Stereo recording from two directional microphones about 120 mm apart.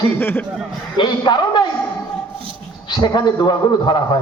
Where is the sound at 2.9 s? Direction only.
40° left (ahead or behind).